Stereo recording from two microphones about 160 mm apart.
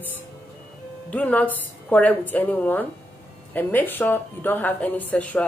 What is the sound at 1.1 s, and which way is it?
Speech, 10° left (ahead or behind).